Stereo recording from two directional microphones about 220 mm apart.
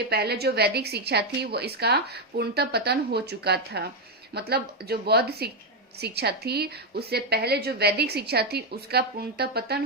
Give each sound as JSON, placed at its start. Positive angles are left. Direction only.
{"t": 0.1, "sound": "a woman's voice", "side_deg": -45}